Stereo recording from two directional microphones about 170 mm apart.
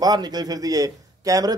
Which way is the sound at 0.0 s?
25° right (ahead or behind).